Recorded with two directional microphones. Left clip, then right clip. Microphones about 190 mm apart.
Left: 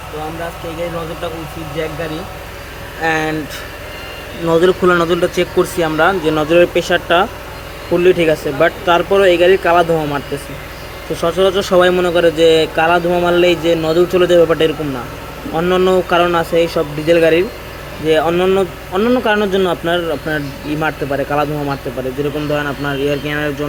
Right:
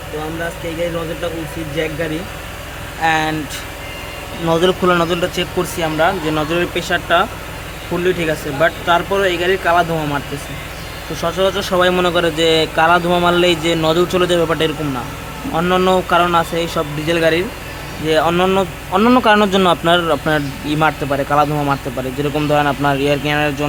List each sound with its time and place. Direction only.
3.0 s a man's voice: 10° right (ahead or behind)
4.4 s speech: 5° right (ahead or behind)
11.9 s a man's voice: 15° right (ahead or behind)
20.8 s a man's voice: 15° right (ahead or behind)